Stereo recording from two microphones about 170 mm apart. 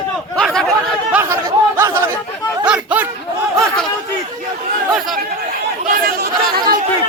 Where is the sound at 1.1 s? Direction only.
15° right (ahead or behind).